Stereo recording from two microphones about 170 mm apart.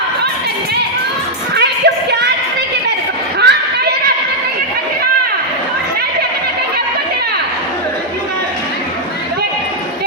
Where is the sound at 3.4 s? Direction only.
70° right (ahead or behind).